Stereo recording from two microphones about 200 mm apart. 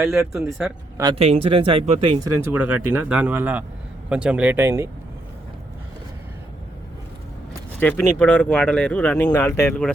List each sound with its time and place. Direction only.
0.3 s speech: 5° right (ahead or behind)
1.1 s speech: 30° right (ahead or behind)
2.3 s speech: 10° right (ahead or behind)
7.8 s speech: 10° left (ahead or behind)